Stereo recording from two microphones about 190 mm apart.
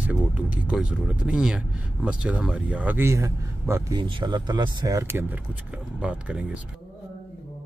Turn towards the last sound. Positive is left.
turn(degrees=-5)  # may be behind; listen again after turning